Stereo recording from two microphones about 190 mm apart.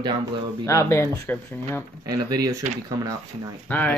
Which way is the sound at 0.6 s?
15° left (ahead or behind).